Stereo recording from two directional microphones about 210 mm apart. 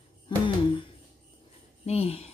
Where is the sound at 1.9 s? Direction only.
30° left (ahead or behind).